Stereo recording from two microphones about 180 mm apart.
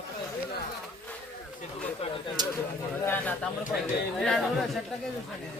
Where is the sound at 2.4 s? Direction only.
25° right (ahead or behind).